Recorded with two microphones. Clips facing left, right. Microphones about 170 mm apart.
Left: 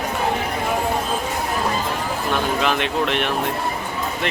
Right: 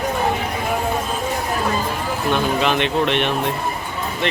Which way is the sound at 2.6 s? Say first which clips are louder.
Right 2 dB; centre (ahead or behind).